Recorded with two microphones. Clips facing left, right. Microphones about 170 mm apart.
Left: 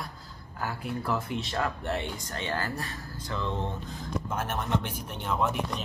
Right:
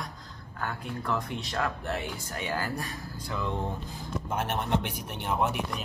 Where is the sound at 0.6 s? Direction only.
5° left (ahead or behind).